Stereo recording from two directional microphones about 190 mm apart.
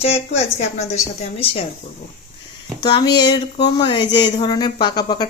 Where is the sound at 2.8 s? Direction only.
20° left (ahead or behind).